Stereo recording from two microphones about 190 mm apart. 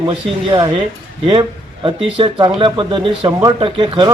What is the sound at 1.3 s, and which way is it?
Speech, 25° right (ahead or behind).